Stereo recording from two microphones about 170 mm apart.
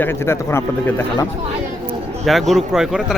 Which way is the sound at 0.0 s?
15° left (ahead or behind).